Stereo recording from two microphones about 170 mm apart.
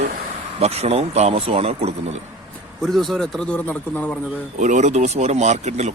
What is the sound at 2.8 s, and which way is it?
A man's voice, centre (ahead or behind).